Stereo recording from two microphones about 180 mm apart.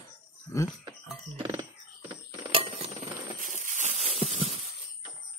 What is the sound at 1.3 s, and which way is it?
Music, 20° right (ahead or behind).